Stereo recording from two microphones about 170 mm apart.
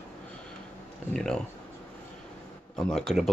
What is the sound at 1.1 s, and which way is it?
Speech, 5° left (ahead or behind).